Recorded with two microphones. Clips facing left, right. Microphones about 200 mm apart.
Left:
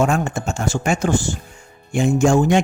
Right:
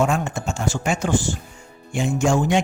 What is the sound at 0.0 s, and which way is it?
Speech, 50° left (ahead or behind).